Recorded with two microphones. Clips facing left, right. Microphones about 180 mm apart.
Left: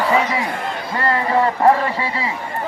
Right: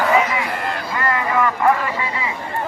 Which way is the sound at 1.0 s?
35° left (ahead or behind).